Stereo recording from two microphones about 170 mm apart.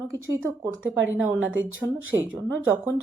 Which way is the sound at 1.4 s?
90° right.